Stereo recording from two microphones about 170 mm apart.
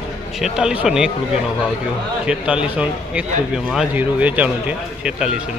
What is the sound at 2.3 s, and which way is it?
A man's voice, 5° right (ahead or behind).